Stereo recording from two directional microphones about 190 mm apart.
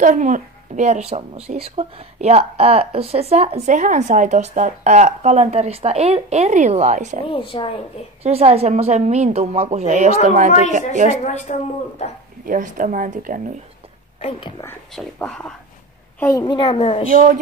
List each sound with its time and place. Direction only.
0.0 s speech: 40° right (ahead or behind)
7.2 s a woman's voice: 25° left (ahead or behind)
8.2 s speech: 30° right (ahead or behind)
11.2 s speech: 40° left (ahead or behind)
12.4 s a woman's voice: 45° right (ahead or behind)
15.0 s speech: 5° left (ahead or behind)
16.2 s a woman's voice: 15° left (ahead or behind); by 17.0 s 30° left (ahead or behind)
17.1 s a woman's voice: 45° right (ahead or behind)